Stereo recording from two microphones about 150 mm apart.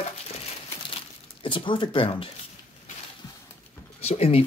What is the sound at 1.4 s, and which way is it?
Speech, 35° left (ahead or behind).